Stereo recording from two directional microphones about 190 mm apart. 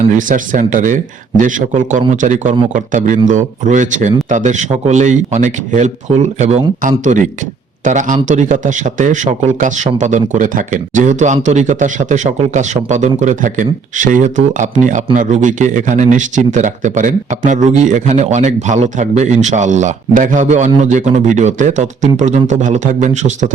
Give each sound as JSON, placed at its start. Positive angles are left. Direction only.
{"t": 0.2, "sound": "speech", "side_deg": -45}